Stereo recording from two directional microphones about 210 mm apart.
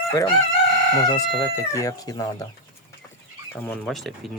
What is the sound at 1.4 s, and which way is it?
Speech, 15° left (ahead or behind).